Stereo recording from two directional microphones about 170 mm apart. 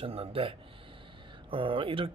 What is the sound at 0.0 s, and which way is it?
Speech, 35° right (ahead or behind).